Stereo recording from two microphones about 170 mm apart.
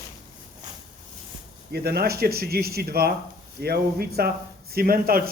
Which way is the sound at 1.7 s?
65° right (ahead or behind).